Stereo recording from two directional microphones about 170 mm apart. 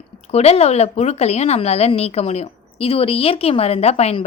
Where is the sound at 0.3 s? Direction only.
40° left (ahead or behind).